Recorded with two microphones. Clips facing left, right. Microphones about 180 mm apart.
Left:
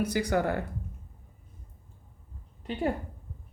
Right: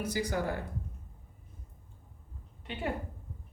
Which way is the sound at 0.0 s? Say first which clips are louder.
Left 5 dB; 65° left (ahead or behind).